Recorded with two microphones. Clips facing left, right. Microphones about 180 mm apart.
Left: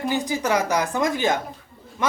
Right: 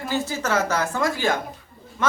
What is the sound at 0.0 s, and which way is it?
A man's voice, 15° left (ahead or behind).